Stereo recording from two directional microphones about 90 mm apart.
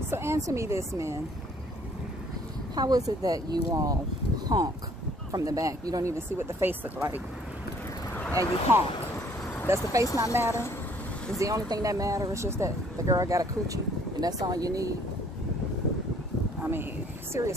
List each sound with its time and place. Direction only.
0.1 s speech: 30° right (ahead or behind)
2.7 s speech: 45° right (ahead or behind)
4.5 s speech: 50° right (ahead or behind)
5.3 s speech: 40° right (ahead or behind)
6.1 s speech: 25° right (ahead or behind)
8.1 s a sound: 20° left (ahead or behind)
8.7 s speech: 25° right (ahead or behind)
17.3 s speech: 35° right (ahead or behind)